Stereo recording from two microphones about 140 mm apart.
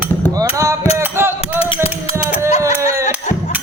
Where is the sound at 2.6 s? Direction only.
20° right (ahead or behind).